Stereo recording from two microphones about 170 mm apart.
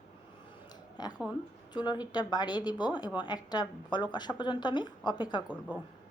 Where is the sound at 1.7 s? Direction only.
25° left (ahead or behind).